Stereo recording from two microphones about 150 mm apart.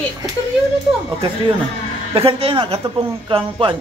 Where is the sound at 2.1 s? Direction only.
40° right (ahead or behind).